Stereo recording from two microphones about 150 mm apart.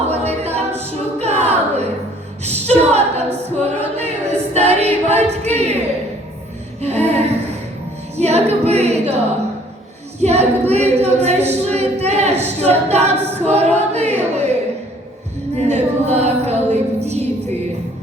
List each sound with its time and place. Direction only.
0.1 s a capella: 45° right (ahead or behind)
6.8 s a sound: 45° right (ahead or behind)
8.1 s a capella: 45° right (ahead or behind)
10.2 s a capella: 45° right (ahead or behind)
13.9 s music: 45° right (ahead or behind)
15.5 s music: 45° right (ahead or behind)